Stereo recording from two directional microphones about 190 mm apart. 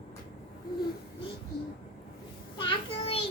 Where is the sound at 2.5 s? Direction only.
25° left (ahead or behind).